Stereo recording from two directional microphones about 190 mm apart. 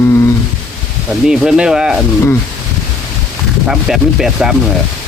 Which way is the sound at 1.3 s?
5° right (ahead or behind).